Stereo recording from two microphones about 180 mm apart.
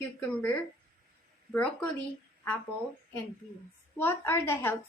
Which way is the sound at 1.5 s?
5° left (ahead or behind).